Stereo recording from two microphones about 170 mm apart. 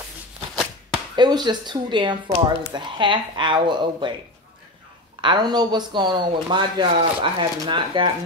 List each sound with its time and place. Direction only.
0.9 s speech: 25° right (ahead or behind)
5.2 s speech: 25° right (ahead or behind)